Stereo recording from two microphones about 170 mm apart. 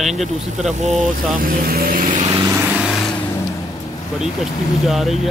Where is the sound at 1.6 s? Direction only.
60° right (ahead or behind).